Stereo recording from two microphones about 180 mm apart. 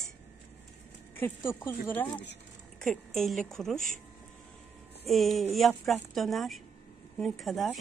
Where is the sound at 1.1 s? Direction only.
10° left (ahead or behind).